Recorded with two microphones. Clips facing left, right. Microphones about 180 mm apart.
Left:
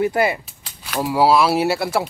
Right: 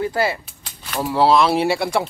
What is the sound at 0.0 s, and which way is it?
Speech, 20° left (ahead or behind).